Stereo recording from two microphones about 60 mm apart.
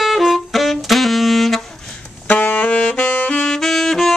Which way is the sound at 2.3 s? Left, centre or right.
Left.